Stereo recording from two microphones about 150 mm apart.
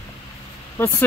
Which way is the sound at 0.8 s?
15° left (ahead or behind).